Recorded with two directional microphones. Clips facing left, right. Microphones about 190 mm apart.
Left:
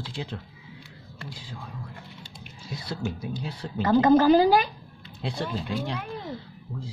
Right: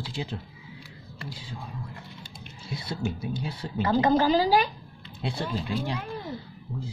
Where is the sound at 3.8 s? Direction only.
50° left (ahead or behind).